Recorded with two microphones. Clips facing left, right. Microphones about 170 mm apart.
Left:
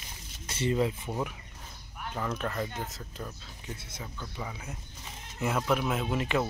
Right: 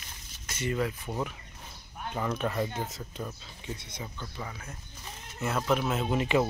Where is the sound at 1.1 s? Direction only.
5° left (ahead or behind).